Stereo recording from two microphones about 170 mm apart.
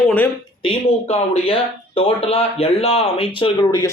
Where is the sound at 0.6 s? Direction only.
35° left (ahead or behind).